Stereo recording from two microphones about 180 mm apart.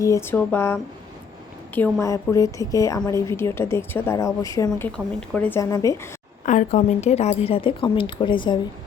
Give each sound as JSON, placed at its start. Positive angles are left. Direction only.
{"t": 0.0, "sound": "a woman's voice", "side_deg": 15}
{"t": 4.9, "sound": "a woman's voice", "side_deg": 5}
{"t": 5.5, "sound": "a woman's voice", "side_deg": 20}
{"t": 6.4, "sound": "a woman's voice", "side_deg": 45}